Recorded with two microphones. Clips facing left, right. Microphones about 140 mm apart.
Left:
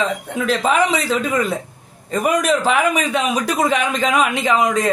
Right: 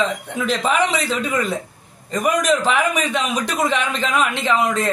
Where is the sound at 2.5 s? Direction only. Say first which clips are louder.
Left 1 dB; 40° left (ahead or behind).